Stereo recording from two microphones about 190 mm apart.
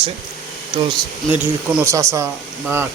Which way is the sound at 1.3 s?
10° right (ahead or behind).